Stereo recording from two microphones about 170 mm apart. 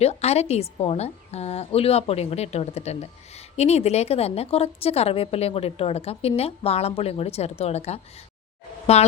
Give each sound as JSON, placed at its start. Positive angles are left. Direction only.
{"t": 0.0, "sound": "a woman's voice", "side_deg": 40}